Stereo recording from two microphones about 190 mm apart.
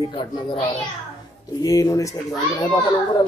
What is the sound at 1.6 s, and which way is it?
Speech, 20° left (ahead or behind).